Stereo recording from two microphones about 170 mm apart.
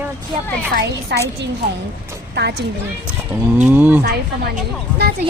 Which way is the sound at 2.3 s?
80° right.